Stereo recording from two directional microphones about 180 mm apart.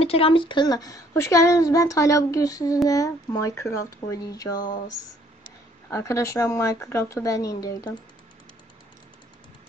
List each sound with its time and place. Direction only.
0.0 s a woman's voice: 30° left (ahead or behind)
5.9 s speech: 15° left (ahead or behind)